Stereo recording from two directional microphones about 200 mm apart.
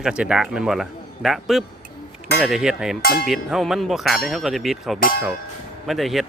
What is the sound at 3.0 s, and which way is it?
Music, 50° left (ahead or behind).